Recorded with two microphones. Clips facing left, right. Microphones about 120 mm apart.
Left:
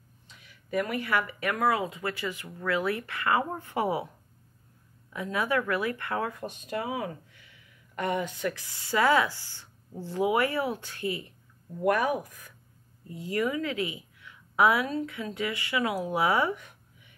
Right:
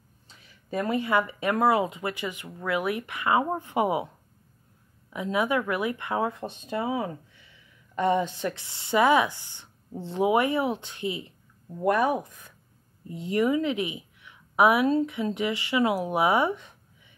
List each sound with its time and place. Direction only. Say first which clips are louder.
0.4 s speech: even; 30° right (ahead or behind)
5.1 s speech: right 3 dB; 20° right (ahead or behind)